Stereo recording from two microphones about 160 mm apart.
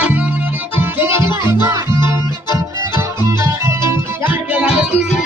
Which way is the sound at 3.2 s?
15° right (ahead or behind).